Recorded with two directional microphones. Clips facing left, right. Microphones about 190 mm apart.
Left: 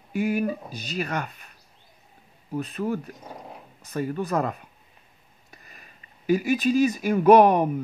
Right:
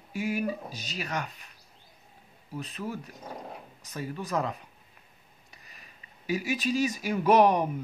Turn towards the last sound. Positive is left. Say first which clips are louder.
# left 6 dB
turn(degrees=55)  # may be behind; listen again after turning